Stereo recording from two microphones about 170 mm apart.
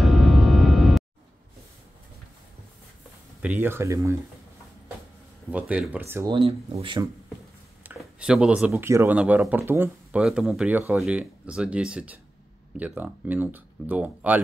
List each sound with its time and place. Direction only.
0.0 s gong: centre (ahead or behind)
3.4 s speech: 15° right (ahead or behind)
5.5 s speech: 10° right (ahead or behind)
6.2 s speech: 30° right (ahead or behind)
7.8 s speech: 5° right (ahead or behind)
10.2 s speech: 5° right (ahead or behind)